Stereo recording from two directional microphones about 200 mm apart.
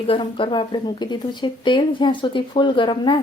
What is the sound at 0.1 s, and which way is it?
Speech, 25° left (ahead or behind).